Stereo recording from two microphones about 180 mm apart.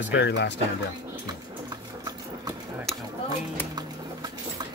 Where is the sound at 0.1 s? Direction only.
75° left (ahead or behind).